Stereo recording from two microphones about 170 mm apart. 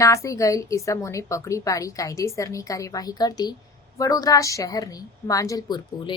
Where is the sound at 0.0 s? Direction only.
20° left (ahead or behind).